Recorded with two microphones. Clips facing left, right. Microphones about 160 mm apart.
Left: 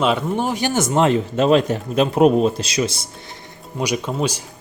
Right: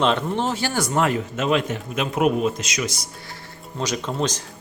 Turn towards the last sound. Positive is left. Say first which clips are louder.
# left 3 dB
turn(degrees=10)  # may be behind; listen again after turning